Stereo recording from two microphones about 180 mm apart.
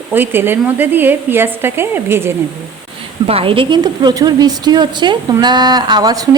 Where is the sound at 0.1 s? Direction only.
10° right (ahead or behind).